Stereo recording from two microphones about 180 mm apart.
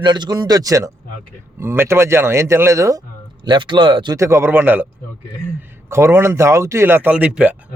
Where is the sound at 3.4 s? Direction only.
25° right (ahead or behind).